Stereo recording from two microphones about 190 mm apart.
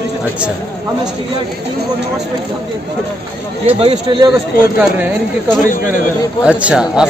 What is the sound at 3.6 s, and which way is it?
Speech, 30° right (ahead or behind).